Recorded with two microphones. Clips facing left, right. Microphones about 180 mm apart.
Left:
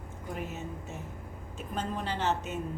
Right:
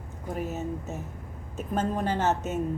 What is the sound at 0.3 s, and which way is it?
A woman's voice, 40° right (ahead or behind).